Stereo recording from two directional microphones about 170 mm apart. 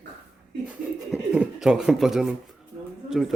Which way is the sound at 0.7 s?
5° right (ahead or behind).